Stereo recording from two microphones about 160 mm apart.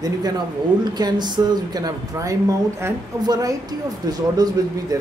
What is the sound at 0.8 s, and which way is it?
Speech, 25° right (ahead or behind).